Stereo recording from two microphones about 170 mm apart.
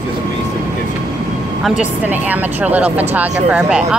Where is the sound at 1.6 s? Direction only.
10° right (ahead or behind).